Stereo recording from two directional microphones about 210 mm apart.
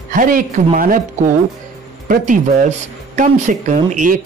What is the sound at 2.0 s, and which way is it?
Speech, 40° right (ahead or behind).